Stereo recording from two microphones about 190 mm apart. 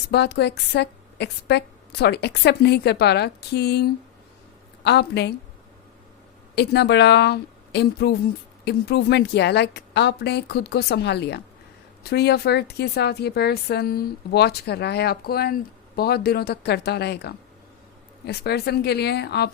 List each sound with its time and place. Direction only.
0.1 s speech: 60° left (ahead or behind)
6.6 s speech: 60° left (ahead or behind)